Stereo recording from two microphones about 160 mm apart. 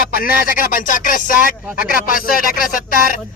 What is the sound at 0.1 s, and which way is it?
Speech, 65° left (ahead or behind).